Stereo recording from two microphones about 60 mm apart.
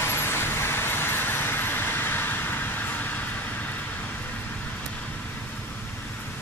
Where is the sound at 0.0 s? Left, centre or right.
Left.